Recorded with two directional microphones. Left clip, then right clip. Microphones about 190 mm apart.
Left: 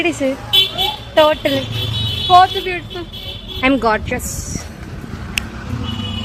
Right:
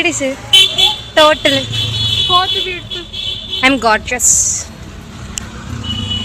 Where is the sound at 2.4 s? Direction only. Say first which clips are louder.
Left 2 dB; 55° left (ahead or behind).